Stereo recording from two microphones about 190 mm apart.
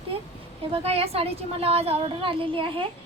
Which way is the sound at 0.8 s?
30° right (ahead or behind).